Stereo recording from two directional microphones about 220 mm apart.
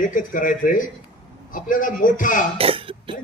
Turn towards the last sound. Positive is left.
turn(degrees=-25)  # may be behind; listen again after turning